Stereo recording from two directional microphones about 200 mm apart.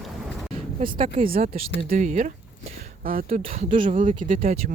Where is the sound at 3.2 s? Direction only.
35° right (ahead or behind).